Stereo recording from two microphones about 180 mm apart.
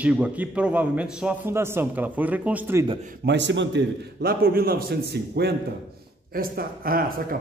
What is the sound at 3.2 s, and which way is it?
A man's voice, 75° right (ahead or behind).